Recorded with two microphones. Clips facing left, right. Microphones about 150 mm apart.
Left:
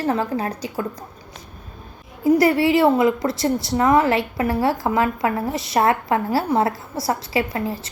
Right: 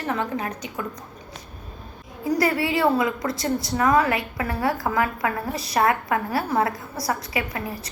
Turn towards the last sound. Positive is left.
turn(degrees=25)  # may be behind; listen again after turning